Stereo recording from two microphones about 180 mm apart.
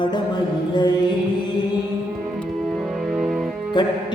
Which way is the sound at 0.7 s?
25° left (ahead or behind).